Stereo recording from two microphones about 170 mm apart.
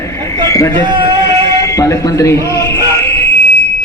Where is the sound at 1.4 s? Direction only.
20° left (ahead or behind).